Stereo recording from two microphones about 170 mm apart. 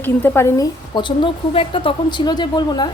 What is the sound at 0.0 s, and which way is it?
A woman's voice, 15° left (ahead or behind).